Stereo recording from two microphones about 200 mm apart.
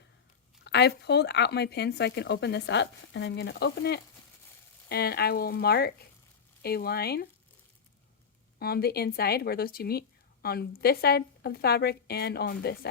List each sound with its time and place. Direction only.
0.6 s a woman's voice: 60° left (ahead or behind)
8.5 s a woman's voice: 50° left (ahead or behind)